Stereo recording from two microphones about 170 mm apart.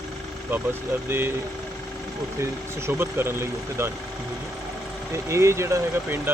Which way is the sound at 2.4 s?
15° right (ahead or behind).